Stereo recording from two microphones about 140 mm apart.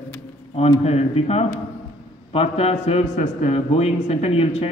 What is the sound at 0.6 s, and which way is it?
A man's voice, 50° left (ahead or behind).